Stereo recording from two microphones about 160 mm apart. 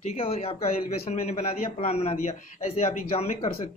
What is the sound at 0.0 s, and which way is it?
A man's voice, 40° left (ahead or behind).